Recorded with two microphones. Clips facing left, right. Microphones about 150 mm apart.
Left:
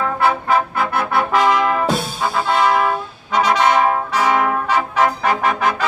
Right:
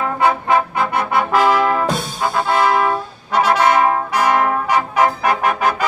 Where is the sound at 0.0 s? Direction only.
15° right (ahead or behind).